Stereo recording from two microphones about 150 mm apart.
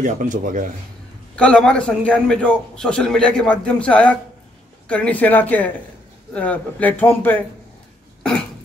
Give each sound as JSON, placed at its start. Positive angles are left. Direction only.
{"t": 0.0, "sound": "speech", "side_deg": -55}
{"t": 1.3, "sound": "a man's voice", "side_deg": 5}